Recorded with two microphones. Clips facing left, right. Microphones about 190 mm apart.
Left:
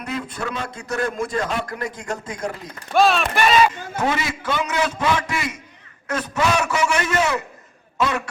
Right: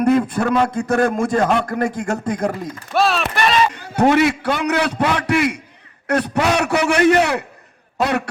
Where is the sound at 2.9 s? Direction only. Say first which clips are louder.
Left 1 dB; centre (ahead or behind).